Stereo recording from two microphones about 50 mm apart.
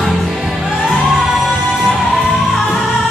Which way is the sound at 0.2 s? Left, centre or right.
Centre.